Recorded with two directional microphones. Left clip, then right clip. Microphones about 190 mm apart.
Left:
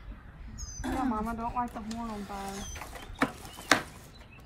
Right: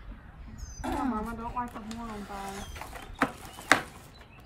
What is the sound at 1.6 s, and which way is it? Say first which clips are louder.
Speech: left 2 dB; centre (ahead or behind).